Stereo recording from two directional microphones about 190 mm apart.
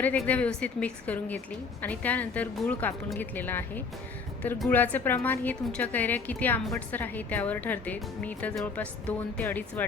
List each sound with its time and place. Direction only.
0.0 s a woman's voice: 10° left (ahead or behind)